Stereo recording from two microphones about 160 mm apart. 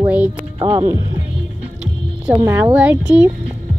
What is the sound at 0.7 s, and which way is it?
Speech, 20° right (ahead or behind).